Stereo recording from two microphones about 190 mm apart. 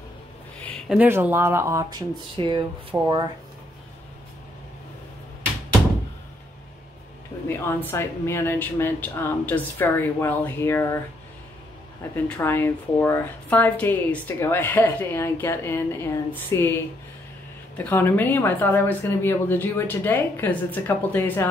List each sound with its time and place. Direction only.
0.6 s a sound: 5° left (ahead or behind)
0.9 s speech: 10° right (ahead or behind)
7.4 s a woman's voice: 10° left (ahead or behind)
12.3 s a woman's voice: 10° left (ahead or behind)
17.7 s a woman's voice: 10° left (ahead or behind)